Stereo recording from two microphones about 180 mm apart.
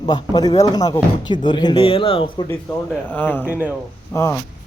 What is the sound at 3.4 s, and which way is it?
Speech, 10° right (ahead or behind).